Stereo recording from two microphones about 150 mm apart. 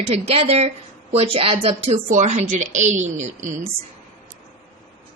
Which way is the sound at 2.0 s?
55° right (ahead or behind).